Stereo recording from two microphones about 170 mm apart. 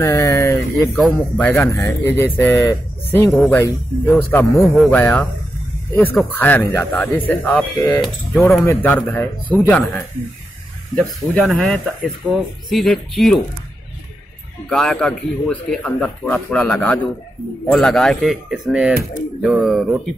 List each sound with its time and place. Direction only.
0.0 s a sound: 15° left (ahead or behind)
0.9 s speech: centre (ahead or behind)
4.6 s a man's voice: centre (ahead or behind)
11.4 s a man's voice: centre (ahead or behind)
14.7 s a man's voice: 5° left (ahead or behind)